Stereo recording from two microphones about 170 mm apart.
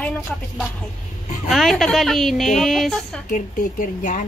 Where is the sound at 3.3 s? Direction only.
50° left (ahead or behind).